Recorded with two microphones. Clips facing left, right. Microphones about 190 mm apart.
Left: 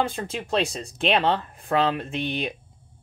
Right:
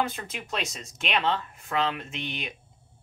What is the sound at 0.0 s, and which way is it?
Speech, 30° left (ahead or behind).